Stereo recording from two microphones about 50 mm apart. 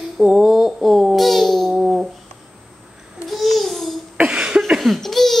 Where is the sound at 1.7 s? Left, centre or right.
Centre.